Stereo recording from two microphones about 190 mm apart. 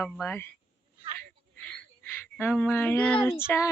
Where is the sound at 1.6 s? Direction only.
10° left (ahead or behind).